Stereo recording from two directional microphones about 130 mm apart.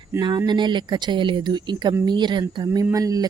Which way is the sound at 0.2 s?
35° right (ahead or behind).